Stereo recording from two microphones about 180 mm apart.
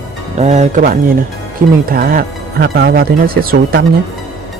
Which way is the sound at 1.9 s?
55° right (ahead or behind).